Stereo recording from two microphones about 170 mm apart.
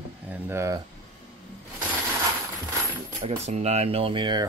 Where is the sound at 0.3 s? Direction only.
15° right (ahead or behind).